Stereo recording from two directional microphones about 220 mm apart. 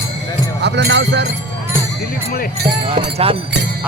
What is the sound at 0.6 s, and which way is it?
Speech, 50° right (ahead or behind).